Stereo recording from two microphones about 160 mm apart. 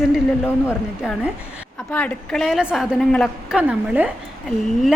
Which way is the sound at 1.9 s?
10° left (ahead or behind).